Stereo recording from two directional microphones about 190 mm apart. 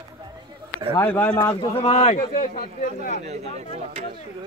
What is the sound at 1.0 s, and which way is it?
Speech, 10° left (ahead or behind).